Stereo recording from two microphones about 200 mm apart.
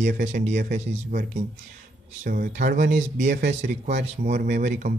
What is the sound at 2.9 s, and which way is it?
A man's voice, 40° right (ahead or behind).